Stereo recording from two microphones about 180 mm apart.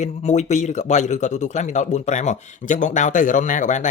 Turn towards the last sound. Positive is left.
turn(degrees=45)  # may be behind; listen again after turning